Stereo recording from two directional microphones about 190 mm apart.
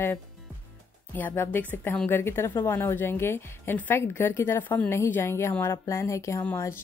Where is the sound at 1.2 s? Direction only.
10° left (ahead or behind).